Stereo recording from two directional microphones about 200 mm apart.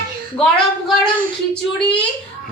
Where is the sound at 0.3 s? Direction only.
5° left (ahead or behind).